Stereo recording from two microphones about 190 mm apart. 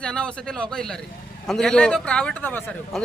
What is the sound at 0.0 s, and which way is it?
Speech, 5° left (ahead or behind).